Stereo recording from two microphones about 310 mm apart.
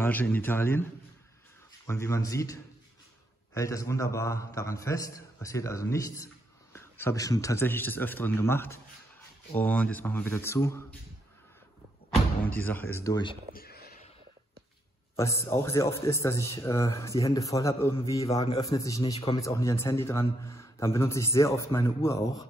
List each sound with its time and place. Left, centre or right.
0.0 s a man's voice: centre
1.9 s a man's voice: centre
12.1 s speech: centre
13.6 s a sound: left
15.1 s a man's voice: centre